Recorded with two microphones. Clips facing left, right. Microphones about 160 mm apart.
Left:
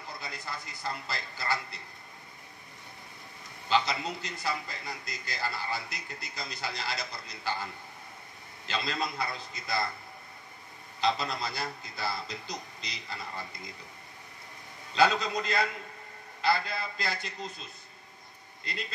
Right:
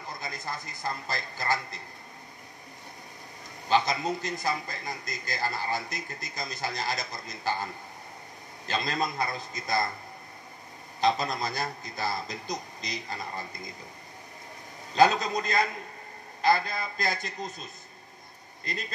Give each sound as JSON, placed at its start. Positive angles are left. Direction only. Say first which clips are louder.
{"t": 0.2, "sound": "a man's voice", "louder": "right 5 dB", "side_deg": -45}
{"t": 3.6, "sound": "a man's voice", "louder": "right 3 dB", "side_deg": -45}
{"t": 11.0, "sound": "a man's voice", "louder": "right 3 dB", "side_deg": -45}
{"t": 15.0, "sound": "a man's voice", "louder": "right 3 dB", "side_deg": -45}
{"t": 18.7, "sound": "a man's voice", "louder": "right 3 dB", "side_deg": -45}